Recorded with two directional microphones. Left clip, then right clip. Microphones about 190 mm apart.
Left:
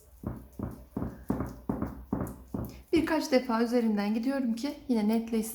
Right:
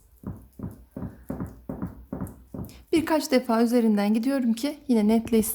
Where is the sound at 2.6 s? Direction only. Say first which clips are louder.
Right 4 dB; 50° right (ahead or behind).